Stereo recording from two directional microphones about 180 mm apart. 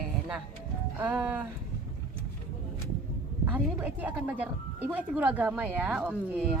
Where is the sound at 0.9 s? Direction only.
10° right (ahead or behind).